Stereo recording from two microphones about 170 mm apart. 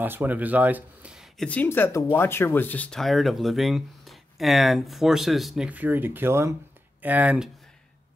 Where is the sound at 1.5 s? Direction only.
10° left (ahead or behind).